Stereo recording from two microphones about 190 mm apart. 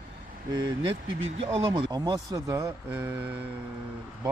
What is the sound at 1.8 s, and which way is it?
Speech, 20° right (ahead or behind).